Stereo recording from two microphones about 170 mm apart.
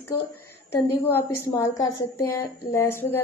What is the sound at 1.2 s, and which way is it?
A woman's voice, 15° left (ahead or behind).